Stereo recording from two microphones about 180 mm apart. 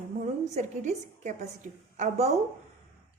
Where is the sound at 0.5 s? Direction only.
40° right (ahead or behind).